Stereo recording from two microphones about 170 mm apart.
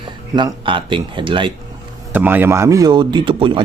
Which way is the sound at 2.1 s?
10° right (ahead or behind).